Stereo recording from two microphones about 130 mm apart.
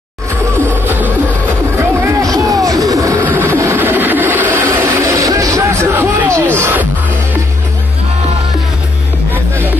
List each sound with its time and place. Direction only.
0.8 s music: 15° right (ahead or behind)
1.8 s music: 25° right (ahead or behind)